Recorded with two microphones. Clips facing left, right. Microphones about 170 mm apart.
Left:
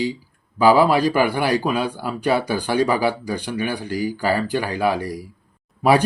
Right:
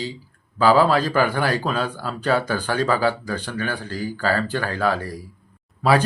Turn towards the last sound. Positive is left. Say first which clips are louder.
# left 2 dB
turn(degrees=15)  # may be behind; listen again after turning